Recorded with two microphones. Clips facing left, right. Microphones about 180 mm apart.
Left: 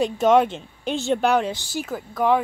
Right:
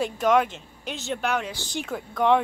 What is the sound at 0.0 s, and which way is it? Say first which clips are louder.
Speech: left 4 dB; 25° left (ahead or behind).